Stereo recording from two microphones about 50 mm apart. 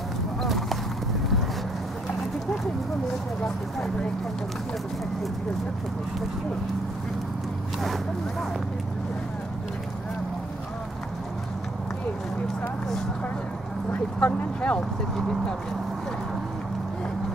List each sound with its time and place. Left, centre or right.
0.4 s clip-clop: centre
3.4 s speech: centre
7.8 s speech: centre
13.9 s speech: left
15.1 s speech: centre